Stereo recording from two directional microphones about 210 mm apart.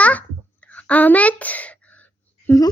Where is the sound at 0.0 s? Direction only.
5° left (ahead or behind).